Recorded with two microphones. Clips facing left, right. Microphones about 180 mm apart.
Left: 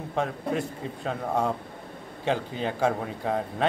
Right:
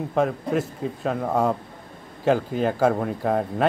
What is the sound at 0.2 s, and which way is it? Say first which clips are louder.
Speech: right 5 dB; 5° right (ahead or behind).